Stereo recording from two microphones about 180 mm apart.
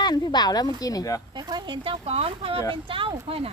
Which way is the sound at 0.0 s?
25° left (ahead or behind).